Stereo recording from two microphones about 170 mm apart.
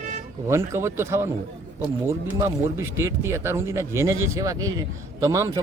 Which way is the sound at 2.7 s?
15° right (ahead or behind).